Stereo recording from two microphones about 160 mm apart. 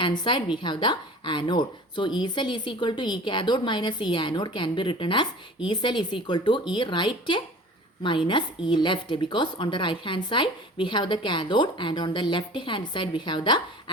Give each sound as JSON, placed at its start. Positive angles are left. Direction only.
{"t": 0.0, "sound": "a woman's voice", "side_deg": 30}